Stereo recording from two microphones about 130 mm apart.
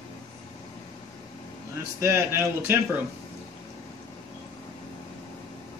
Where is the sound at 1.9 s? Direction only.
20° right (ahead or behind).